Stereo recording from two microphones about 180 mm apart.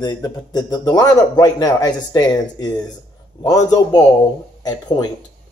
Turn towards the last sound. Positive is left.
turn(degrees=20)  # may be behind; listen again after turning